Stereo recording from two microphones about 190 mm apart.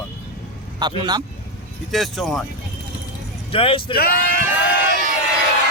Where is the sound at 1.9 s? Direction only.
Centre (ahead or behind).